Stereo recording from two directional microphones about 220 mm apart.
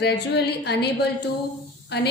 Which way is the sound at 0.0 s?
50° left (ahead or behind).